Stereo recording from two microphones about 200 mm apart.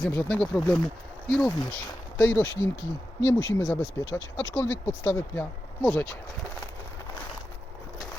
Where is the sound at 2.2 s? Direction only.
10° left (ahead or behind).